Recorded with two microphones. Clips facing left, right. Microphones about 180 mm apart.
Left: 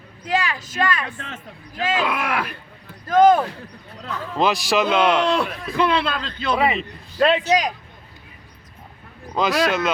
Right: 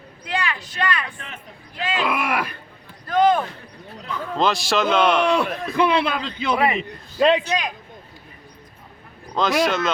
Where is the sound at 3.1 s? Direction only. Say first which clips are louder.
Left 4 dB; 45° left (ahead or behind).